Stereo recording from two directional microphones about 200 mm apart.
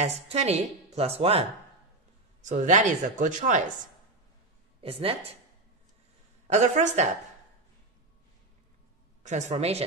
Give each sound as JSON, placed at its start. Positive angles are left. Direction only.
{"t": 0.0, "sound": "a woman's voice", "side_deg": -30}
{"t": 2.4, "sound": "a woman's voice", "side_deg": -35}
{"t": 4.8, "sound": "speech", "side_deg": -30}
{"t": 6.4, "sound": "a woman's voice", "side_deg": -35}
{"t": 9.2, "sound": "a woman's voice", "side_deg": -35}